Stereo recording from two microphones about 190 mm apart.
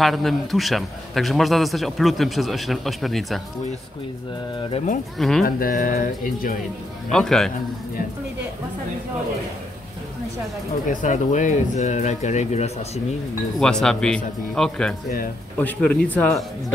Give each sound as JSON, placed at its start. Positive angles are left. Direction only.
{"t": 0.0, "sound": "a man's voice", "side_deg": 0}
{"t": 5.4, "sound": "speech", "side_deg": 50}
{"t": 7.1, "sound": "a man's voice", "side_deg": 0}
{"t": 10.9, "sound": "speech", "side_deg": 40}
{"t": 13.6, "sound": "a man's voice", "side_deg": 5}